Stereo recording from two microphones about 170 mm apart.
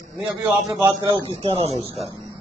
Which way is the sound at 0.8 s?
30° right (ahead or behind).